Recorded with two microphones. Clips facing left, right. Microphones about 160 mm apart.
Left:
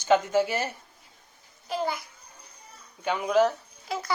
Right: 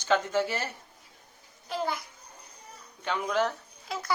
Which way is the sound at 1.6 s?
Centre (ahead or behind).